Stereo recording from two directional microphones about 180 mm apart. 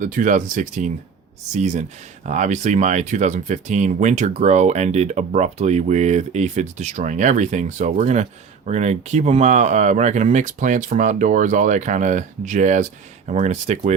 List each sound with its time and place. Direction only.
0.0 s speech: 45° right (ahead or behind)